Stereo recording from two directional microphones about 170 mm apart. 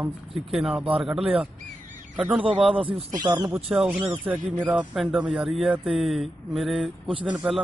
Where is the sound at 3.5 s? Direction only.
5° right (ahead or behind).